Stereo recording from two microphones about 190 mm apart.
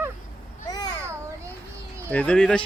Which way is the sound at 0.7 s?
20° left (ahead or behind).